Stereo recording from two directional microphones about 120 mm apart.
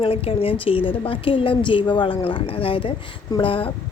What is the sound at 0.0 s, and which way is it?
A woman's voice, 50° left (ahead or behind).